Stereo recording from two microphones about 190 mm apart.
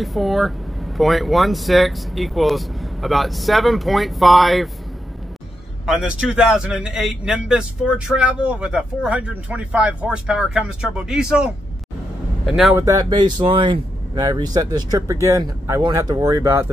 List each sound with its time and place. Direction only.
0.0 s speech: centre (ahead or behind)
5.9 s speech: 5° right (ahead or behind)
12.7 s speech: 20° right (ahead or behind)